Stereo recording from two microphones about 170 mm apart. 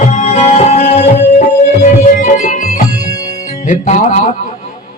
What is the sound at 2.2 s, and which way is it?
Music, 45° left (ahead or behind).